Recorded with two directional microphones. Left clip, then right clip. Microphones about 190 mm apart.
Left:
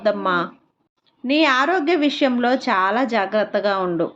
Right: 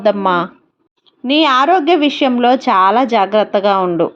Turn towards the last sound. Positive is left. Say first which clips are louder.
# right 7 dB
turn(degrees=-20)  # may be behind; listen again after turning